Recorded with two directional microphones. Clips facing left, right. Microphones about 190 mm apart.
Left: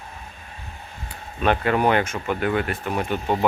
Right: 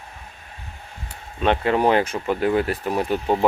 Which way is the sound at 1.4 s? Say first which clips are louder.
Right 1 dB; 25° right (ahead or behind).